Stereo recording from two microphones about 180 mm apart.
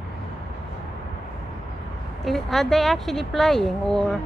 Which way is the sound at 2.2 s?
Centre (ahead or behind).